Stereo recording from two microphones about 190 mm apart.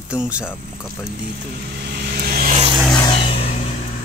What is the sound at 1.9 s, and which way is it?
Vehicle, 55° right (ahead or behind).